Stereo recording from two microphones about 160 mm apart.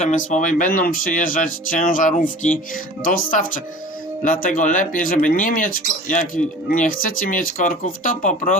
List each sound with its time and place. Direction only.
0.0 s speech: 50° left (ahead or behind)